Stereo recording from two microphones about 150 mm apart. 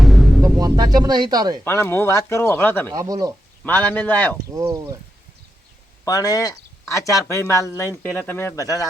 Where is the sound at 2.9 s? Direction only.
25° right (ahead or behind).